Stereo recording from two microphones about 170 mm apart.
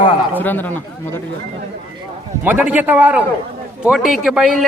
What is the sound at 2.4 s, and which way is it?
A man's voice, 10° right (ahead or behind).